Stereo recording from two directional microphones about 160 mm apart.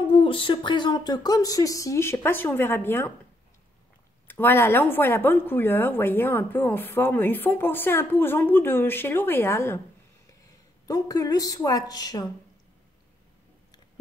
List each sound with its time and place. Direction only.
0.1 s speech: 35° left (ahead or behind); by 3.1 s 15° left (ahead or behind)
4.3 s speech: 15° left (ahead or behind)
10.9 s speech: 20° left (ahead or behind)